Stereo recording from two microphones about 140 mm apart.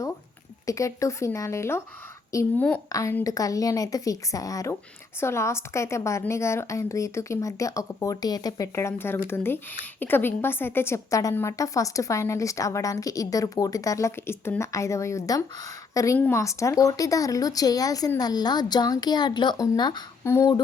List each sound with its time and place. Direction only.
0.6 s a woman's voice: 25° left (ahead or behind)
20.2 s a woman's voice: 20° left (ahead or behind)